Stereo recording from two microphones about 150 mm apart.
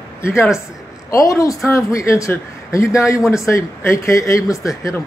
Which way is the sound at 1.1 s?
20° left (ahead or behind).